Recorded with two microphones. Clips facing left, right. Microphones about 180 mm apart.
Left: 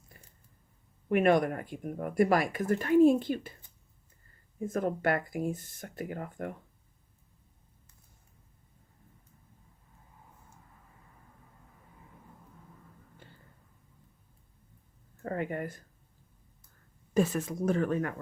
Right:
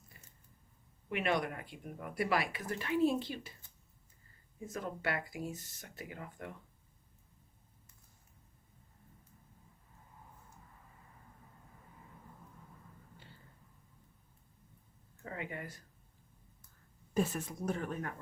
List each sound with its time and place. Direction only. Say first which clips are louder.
0.1 s a sound: left 4 dB; 50° left (ahead or behind)
1.0 s speech: left 9 dB; 50° left (ahead or behind)
4.6 s speech: left 9 dB; 50° left (ahead or behind)
15.2 s speech: left 9 dB; 50° left (ahead or behind)
17.2 s speech: left 6 dB; 90° left